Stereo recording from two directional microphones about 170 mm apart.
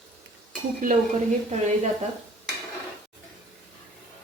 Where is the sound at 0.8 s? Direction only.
55° right (ahead or behind).